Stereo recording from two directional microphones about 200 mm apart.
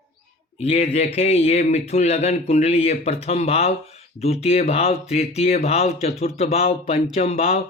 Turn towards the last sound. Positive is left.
turn(degrees=30)  # may be behind; listen again after turning